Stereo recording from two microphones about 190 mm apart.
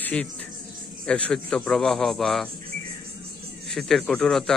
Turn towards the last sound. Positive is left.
turn(degrees=0)  # may be behind; listen again after turning